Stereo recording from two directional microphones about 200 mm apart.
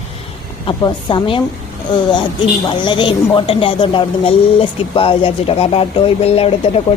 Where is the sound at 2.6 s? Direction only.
25° left (ahead or behind).